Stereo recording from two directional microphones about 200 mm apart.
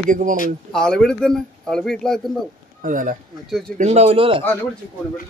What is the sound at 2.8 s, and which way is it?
Speech, 40° right (ahead or behind).